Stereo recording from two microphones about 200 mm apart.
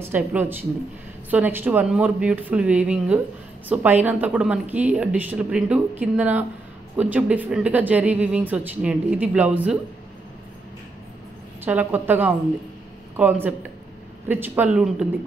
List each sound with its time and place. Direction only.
0.0 s speech: 10° right (ahead or behind)
11.6 s speech: 10° right (ahead or behind)